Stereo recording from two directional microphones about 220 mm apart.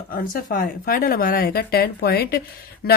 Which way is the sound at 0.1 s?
40° left (ahead or behind).